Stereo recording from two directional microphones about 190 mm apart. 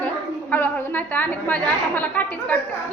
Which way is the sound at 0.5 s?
10° left (ahead or behind).